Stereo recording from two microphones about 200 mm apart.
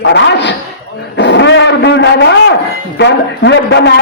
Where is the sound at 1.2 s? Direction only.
60° left (ahead or behind).